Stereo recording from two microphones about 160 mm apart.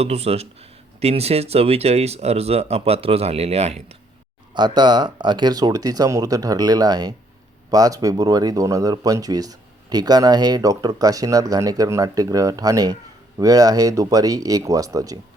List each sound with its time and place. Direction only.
0.0 s speech: 40° right (ahead or behind)
4.5 s speech: 30° right (ahead or behind)